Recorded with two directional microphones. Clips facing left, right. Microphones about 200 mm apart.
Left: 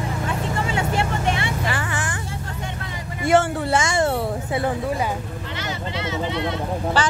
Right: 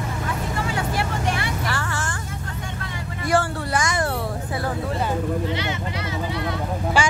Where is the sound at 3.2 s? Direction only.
25° left (ahead or behind).